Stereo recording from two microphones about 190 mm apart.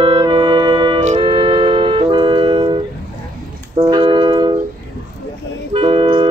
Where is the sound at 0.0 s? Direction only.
25° right (ahead or behind).